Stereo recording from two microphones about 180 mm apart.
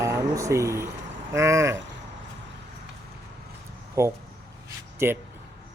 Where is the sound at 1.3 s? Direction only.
15° right (ahead or behind).